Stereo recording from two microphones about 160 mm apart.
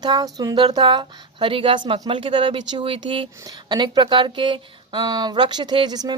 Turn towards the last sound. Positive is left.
turn(degrees=-25)  # may be behind; listen again after turning